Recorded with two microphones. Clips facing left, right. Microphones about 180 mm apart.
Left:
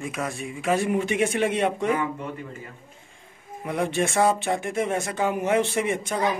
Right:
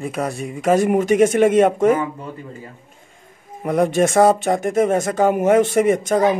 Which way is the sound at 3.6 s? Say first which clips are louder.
Right 8 dB; 40° right (ahead or behind).